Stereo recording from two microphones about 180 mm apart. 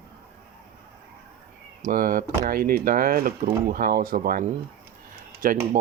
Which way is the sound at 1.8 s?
50° right (ahead or behind).